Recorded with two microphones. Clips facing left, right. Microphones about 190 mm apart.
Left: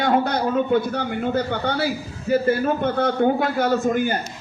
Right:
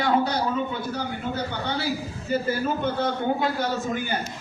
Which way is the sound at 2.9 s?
55° left (ahead or behind).